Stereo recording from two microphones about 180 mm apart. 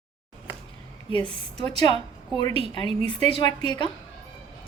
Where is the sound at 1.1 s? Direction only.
30° right (ahead or behind).